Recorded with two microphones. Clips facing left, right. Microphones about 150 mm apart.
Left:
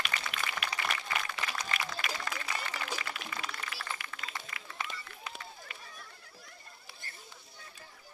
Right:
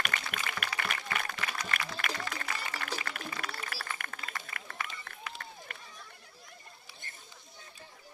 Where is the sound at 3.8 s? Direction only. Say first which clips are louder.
Even; 45° right (ahead or behind).